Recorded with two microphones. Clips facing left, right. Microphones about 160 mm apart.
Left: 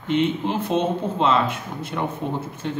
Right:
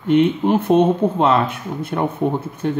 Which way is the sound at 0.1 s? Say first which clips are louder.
Right 7 dB; 55° right (ahead or behind).